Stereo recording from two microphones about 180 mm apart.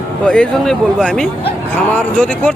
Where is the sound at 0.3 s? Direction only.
5° left (ahead or behind).